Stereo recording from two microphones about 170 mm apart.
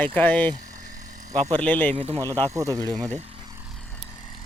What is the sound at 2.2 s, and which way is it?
Speech, 20° right (ahead or behind).